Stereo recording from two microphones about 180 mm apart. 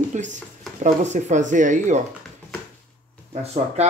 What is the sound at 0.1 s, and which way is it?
Speech, 40° right (ahead or behind).